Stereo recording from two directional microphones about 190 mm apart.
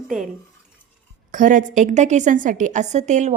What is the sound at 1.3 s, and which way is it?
A woman's voice, 45° right (ahead or behind).